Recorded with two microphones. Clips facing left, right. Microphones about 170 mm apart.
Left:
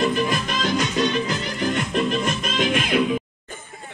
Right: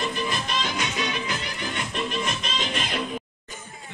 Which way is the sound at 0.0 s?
50° left (ahead or behind).